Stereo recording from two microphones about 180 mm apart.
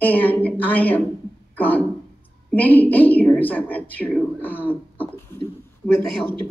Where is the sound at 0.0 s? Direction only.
10° left (ahead or behind).